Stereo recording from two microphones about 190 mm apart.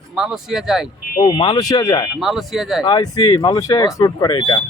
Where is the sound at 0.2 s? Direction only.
5° right (ahead or behind).